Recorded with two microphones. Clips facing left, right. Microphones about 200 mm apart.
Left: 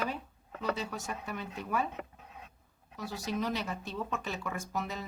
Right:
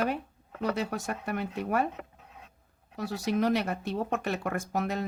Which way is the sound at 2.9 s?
65° right (ahead or behind).